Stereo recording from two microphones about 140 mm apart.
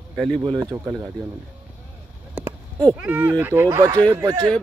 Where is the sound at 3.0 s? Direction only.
10° right (ahead or behind).